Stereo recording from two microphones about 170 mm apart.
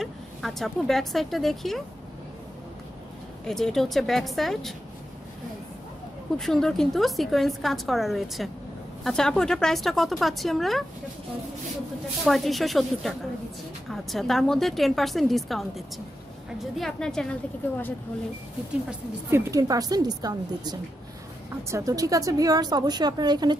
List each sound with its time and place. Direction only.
0.0 s a woman's voice: centre (ahead or behind)
3.4 s a woman's voice: 5° left (ahead or behind)
6.3 s a woman's voice: 5° left (ahead or behind)
12.3 s a woman's voice: centre (ahead or behind)
16.7 s a woman's voice: 5° left (ahead or behind)
18.9 s a woman's voice: 15° right (ahead or behind)